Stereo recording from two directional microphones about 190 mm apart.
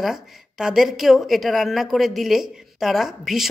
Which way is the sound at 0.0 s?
5° right (ahead or behind).